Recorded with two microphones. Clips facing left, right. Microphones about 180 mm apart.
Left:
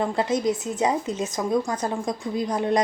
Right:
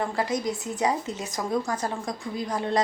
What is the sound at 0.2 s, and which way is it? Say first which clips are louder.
A woman's voice: left 4 dB; 25° left (ahead or behind).